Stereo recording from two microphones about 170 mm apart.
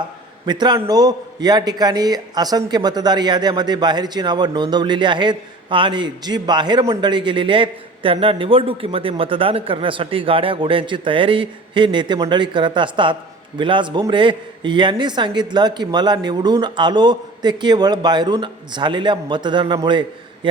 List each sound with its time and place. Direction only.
0.4 s a man's voice: 25° right (ahead or behind)